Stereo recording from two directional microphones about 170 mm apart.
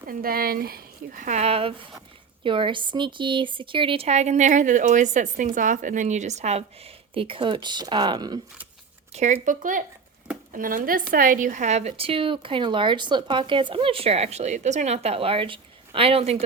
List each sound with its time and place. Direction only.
0.1 s a woman's voice: 60° right (ahead or behind); by 8.4 s 25° right (ahead or behind)
9.1 s a woman's voice: 45° right (ahead or behind)